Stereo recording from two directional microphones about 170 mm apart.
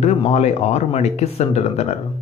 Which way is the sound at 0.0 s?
40° left (ahead or behind).